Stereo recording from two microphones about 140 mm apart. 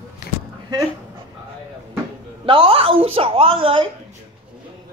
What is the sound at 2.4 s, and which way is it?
A woman's voice, 40° right (ahead or behind).